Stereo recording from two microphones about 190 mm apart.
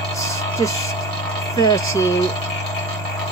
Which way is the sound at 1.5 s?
20° left (ahead or behind).